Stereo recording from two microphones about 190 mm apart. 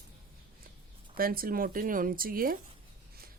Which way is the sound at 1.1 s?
50° right (ahead or behind).